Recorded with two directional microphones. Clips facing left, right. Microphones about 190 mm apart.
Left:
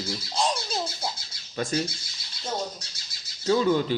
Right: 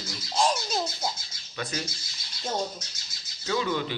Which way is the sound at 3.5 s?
40° left (ahead or behind).